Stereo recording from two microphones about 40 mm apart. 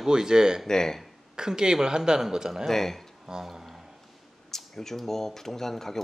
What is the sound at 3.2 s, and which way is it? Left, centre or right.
Speech, centre.